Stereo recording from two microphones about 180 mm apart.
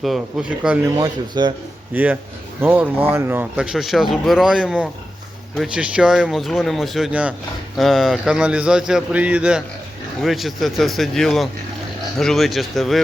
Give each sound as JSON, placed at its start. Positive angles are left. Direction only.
{"t": 0.0, "sound": "speech", "side_deg": 0}
{"t": 0.9, "sound": "speech", "side_deg": -20}
{"t": 1.9, "sound": "speech", "side_deg": -10}